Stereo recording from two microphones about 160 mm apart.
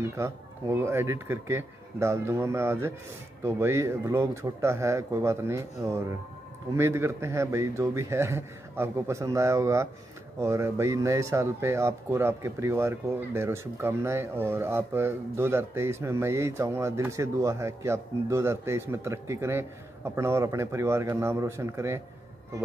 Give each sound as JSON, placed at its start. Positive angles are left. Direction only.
{"t": 0.0, "sound": "speech", "side_deg": -15}